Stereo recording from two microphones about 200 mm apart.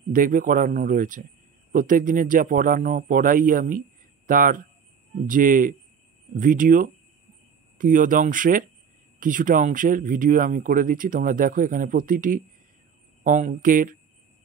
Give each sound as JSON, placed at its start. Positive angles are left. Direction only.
{"t": 0.1, "sound": "speech", "side_deg": -45}